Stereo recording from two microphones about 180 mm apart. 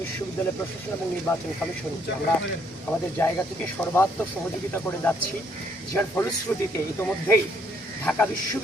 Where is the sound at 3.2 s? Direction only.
15° left (ahead or behind).